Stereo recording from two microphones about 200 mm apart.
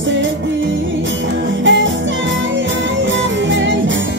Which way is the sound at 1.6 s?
70° right (ahead or behind).